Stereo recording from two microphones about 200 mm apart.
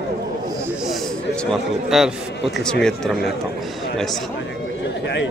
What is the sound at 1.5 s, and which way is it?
Speech, centre (ahead or behind).